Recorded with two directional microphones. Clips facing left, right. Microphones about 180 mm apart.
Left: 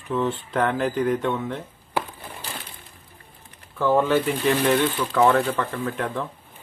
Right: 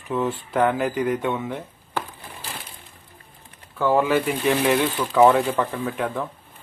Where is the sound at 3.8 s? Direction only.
10° right (ahead or behind).